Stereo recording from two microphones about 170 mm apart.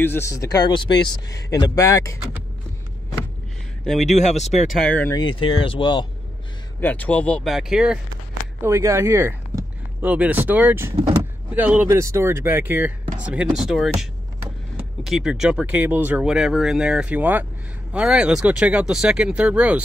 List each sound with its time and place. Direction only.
0.0 s speech: 15° left (ahead or behind)
3.8 s speech: centre (ahead or behind)
4.1 s speech: 40° left (ahead or behind)
4.7 s speech: 10° left (ahead or behind)
5.1 s speech: 30° left (ahead or behind)
6.8 s speech: 10° left (ahead or behind)
8.6 s speech: 15° right (ahead or behind)
15.0 s speech: 5° right (ahead or behind)